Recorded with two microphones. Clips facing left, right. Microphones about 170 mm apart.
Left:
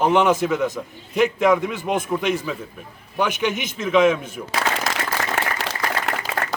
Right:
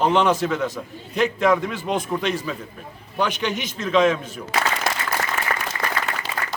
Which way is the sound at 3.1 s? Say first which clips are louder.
Left 2 dB; 15° left (ahead or behind).